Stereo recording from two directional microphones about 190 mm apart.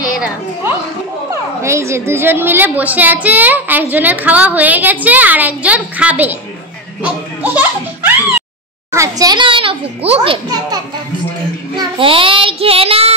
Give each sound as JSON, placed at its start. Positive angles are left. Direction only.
{"t": 1.6, "sound": "a woman's voice", "side_deg": -15}
{"t": 7.0, "sound": "a sound", "side_deg": -10}
{"t": 8.9, "sound": "a child's voice", "side_deg": -15}